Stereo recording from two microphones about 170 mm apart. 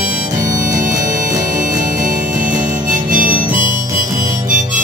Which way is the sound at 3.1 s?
50° right (ahead or behind).